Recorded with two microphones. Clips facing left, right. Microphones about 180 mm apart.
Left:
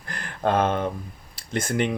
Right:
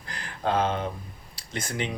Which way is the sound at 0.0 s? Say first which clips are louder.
Left 4 dB; 55° left (ahead or behind).